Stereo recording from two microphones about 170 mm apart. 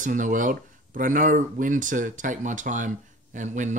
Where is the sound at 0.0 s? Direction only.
50° right (ahead or behind).